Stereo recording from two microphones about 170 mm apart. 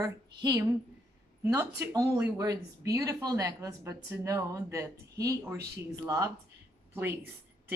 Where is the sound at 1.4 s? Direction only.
15° right (ahead or behind).